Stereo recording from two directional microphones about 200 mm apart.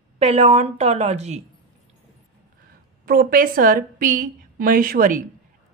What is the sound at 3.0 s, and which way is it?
A woman's voice, 45° right (ahead or behind).